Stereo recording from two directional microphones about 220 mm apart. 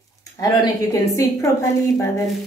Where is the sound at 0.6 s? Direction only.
15° left (ahead or behind).